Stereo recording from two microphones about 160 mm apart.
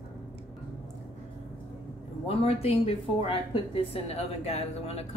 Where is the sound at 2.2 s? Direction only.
35° left (ahead or behind).